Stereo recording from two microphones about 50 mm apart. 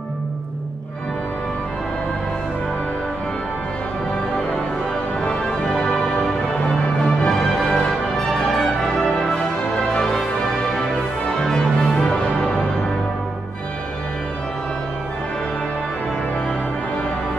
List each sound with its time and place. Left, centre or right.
5.2 s music: centre
8.3 s change ringing: centre
9.3 s music: centre
11.3 s music: centre